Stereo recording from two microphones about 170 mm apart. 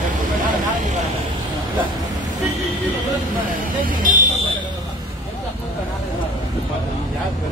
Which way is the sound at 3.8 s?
50° right (ahead or behind).